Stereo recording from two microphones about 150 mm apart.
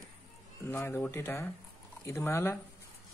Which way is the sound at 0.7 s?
15° left (ahead or behind).